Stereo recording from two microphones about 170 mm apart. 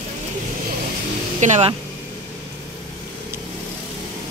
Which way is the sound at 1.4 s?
45° right (ahead or behind).